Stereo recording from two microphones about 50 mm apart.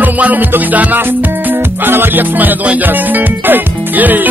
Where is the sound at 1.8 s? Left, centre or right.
Right.